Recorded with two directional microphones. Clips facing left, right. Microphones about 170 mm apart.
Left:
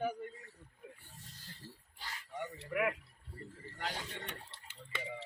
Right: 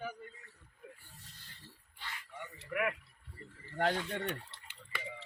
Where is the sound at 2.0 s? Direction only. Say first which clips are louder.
Left 4 dB; 40° left (ahead or behind).